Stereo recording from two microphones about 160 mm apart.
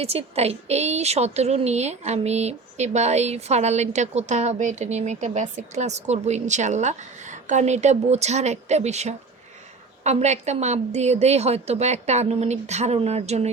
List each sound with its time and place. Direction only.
0.0 s a woman's voice: 40° right (ahead or behind)